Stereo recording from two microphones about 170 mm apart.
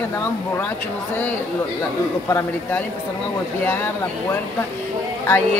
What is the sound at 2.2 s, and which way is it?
Speech, 15° left (ahead or behind).